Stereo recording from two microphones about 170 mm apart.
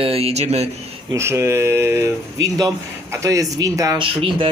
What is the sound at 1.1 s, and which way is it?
A man's voice, 15° right (ahead or behind).